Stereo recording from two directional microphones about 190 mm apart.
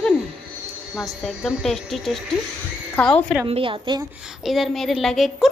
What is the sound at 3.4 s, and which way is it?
Speech, 30° right (ahead or behind).